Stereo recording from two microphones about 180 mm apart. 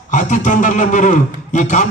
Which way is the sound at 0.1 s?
45° left (ahead or behind).